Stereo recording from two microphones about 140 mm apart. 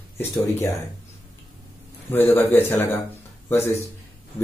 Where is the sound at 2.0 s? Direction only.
15° left (ahead or behind).